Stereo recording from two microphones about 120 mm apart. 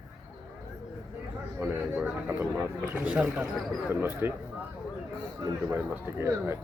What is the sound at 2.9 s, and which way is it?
A man's voice, 10° right (ahead or behind).